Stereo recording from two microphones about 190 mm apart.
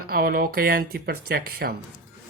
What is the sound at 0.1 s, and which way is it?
Speech, 50° right (ahead or behind).